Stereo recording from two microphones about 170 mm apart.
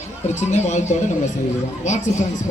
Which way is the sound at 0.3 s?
40° left (ahead or behind).